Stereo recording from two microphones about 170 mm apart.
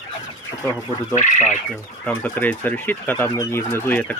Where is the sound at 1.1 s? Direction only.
45° left (ahead or behind).